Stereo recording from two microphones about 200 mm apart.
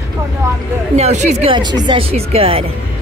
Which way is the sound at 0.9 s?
35° right (ahead or behind).